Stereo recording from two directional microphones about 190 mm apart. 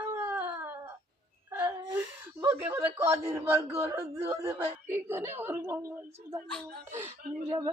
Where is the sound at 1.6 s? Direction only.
10° right (ahead or behind).